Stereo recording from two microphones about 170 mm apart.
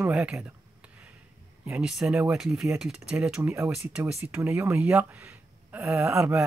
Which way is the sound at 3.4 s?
15° right (ahead or behind).